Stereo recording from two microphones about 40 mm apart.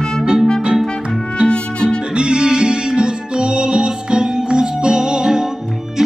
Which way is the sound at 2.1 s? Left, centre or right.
Right.